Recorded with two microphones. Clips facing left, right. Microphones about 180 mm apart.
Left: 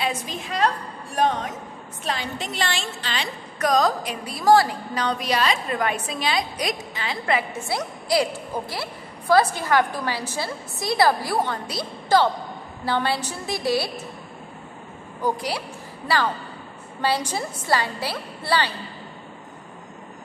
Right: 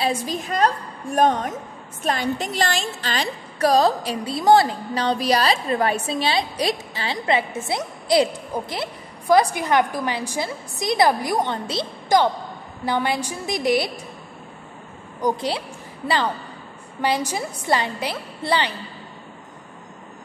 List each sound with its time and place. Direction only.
0.0 s a woman's voice: 35° right (ahead or behind)
3.5 s a woman's voice: 30° right (ahead or behind)
15.1 s a woman's voice: 20° right (ahead or behind)
17.0 s a woman's voice: 15° right (ahead or behind)